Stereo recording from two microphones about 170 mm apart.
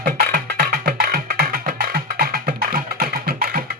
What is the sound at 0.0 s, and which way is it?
Music, 60° right (ahead or behind).